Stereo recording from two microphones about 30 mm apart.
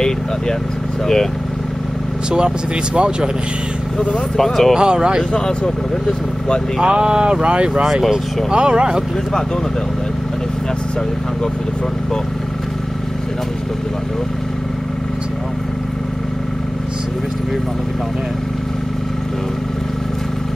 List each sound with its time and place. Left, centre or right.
1.0 s speech: centre
2.3 s speech: right
4.4 s speech: centre
4.7 s speech: right
6.8 s speech: right